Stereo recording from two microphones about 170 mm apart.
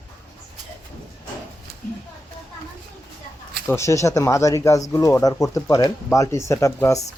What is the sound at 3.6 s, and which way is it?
Speech, 15° left (ahead or behind).